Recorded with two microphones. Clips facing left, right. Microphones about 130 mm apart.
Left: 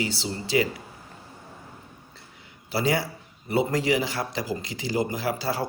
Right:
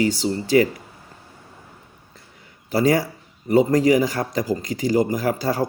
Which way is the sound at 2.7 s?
45° right (ahead or behind).